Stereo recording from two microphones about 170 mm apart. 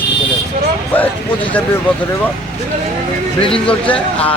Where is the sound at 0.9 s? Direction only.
10° left (ahead or behind).